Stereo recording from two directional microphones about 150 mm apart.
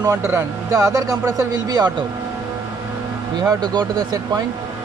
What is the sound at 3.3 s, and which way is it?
A man's voice, 25° right (ahead or behind).